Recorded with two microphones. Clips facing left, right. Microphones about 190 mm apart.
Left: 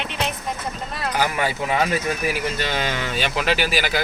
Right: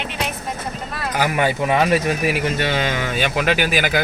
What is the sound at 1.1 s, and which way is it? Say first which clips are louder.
Speech: right 4 dB; 55° right (ahead or behind).